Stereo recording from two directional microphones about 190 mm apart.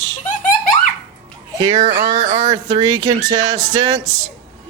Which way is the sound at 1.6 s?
25° right (ahead or behind).